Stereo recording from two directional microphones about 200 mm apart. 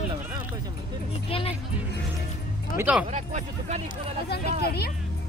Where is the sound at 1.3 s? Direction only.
30° left (ahead or behind).